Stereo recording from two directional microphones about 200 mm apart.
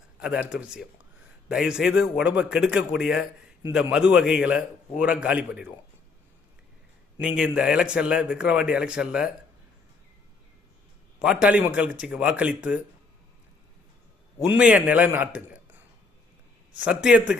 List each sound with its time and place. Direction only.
0.2 s a man's voice: 5° right (ahead or behind)
7.2 s a man's voice: 5° right (ahead or behind)
11.2 s a man's voice: 5° right (ahead or behind)
14.5 s a man's voice: 5° right (ahead or behind)
16.7 s a man's voice: 5° right (ahead or behind)